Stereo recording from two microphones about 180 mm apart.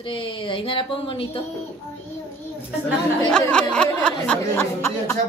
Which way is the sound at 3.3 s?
5° left (ahead or behind).